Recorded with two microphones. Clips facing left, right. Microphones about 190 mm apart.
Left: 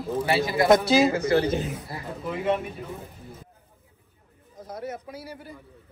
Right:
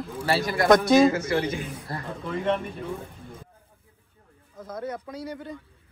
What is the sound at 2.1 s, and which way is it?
Speech, 5° left (ahead or behind).